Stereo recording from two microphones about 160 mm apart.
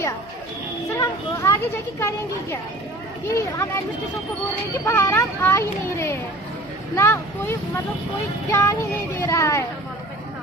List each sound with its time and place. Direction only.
0.9 s speech: 20° left (ahead or behind)